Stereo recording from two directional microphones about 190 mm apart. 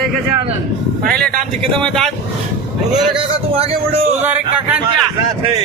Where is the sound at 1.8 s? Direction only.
Centre (ahead or behind).